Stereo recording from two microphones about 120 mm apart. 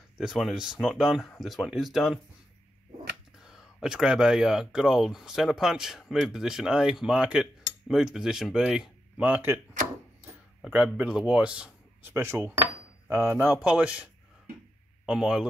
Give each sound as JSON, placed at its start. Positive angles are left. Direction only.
{"t": 0.2, "sound": "speech", "side_deg": -5}
{"t": 3.3, "sound": "speech", "side_deg": -5}
{"t": 10.6, "sound": "speech", "side_deg": -10}
{"t": 12.1, "sound": "a man's voice", "side_deg": -25}
{"t": 15.0, "sound": "a man's voice", "side_deg": -5}